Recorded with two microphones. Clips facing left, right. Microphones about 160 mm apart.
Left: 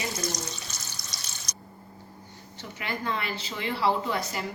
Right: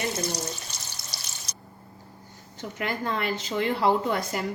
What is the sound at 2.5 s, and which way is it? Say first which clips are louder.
A woman's voice: right 4 dB; 45° right (ahead or behind).